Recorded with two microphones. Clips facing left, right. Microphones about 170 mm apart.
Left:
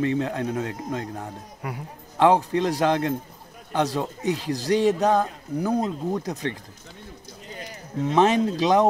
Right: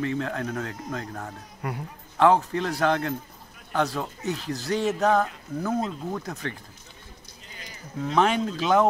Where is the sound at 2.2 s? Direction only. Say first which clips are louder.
Left 2 dB; 20° left (ahead or behind).